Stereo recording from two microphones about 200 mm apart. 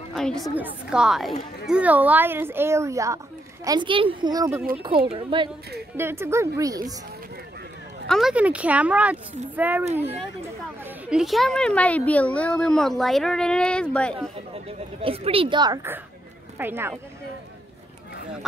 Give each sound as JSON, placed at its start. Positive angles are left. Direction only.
{"t": 0.1, "sound": "a woman's voice", "side_deg": 5}
{"t": 5.9, "sound": "speech", "side_deg": -10}
{"t": 8.1, "sound": "a woman's voice", "side_deg": 0}
{"t": 14.5, "sound": "speech", "side_deg": -30}